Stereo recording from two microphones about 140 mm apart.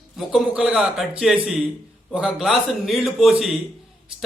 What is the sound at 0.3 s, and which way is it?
A man's voice, centre (ahead or behind).